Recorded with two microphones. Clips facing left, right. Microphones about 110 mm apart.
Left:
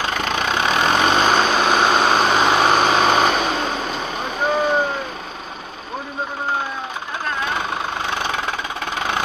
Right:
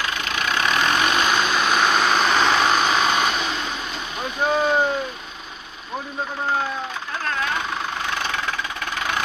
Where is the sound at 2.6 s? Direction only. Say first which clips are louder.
Left 4 dB; 40° left (ahead or behind).